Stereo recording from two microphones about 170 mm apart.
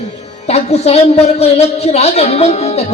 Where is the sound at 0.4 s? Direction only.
40° left (ahead or behind).